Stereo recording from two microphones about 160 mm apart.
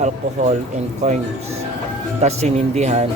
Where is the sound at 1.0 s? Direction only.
45° right (ahead or behind).